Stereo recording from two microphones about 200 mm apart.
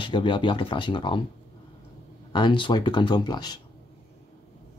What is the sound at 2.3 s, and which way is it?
Speech, 20° left (ahead or behind).